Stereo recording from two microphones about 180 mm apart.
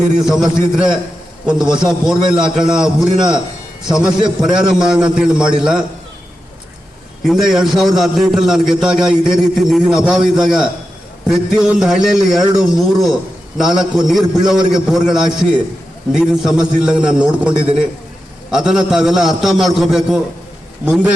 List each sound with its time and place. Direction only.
0.2 s a man's voice: centre (ahead or behind)
3.2 s a man's voice: 25° right (ahead or behind)
3.8 s a man's voice: 5° right (ahead or behind)
7.3 s a man's voice: centre (ahead or behind)